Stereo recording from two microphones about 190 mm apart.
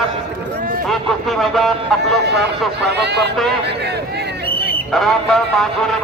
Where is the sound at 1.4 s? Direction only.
Centre (ahead or behind).